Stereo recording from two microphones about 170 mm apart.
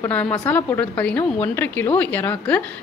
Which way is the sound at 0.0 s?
10° left (ahead or behind).